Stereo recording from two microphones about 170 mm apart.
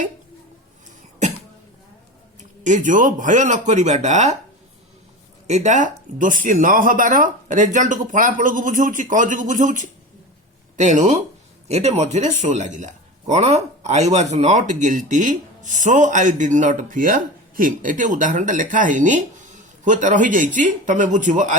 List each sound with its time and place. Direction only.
2.4 s speech: 45° right (ahead or behind)
5.5 s speech: 40° right (ahead or behind)